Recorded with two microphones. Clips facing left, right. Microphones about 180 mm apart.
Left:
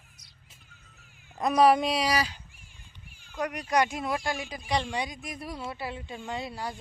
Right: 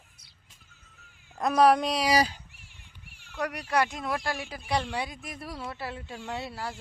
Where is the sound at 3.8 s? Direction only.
Centre (ahead or behind).